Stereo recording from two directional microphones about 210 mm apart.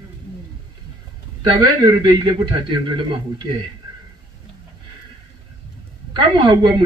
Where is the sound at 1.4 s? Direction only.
20° right (ahead or behind).